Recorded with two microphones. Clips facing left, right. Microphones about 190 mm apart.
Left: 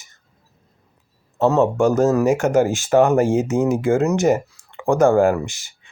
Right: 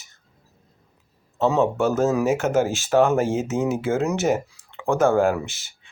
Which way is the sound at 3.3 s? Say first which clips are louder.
Left 5 dB; centre (ahead or behind).